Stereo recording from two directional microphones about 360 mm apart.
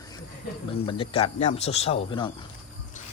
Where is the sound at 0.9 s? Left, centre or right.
Centre.